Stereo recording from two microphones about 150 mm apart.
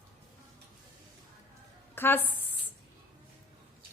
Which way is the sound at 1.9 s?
15° left (ahead or behind).